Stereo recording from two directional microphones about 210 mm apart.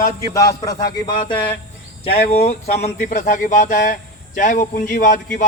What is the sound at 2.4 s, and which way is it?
Speech, 30° left (ahead or behind).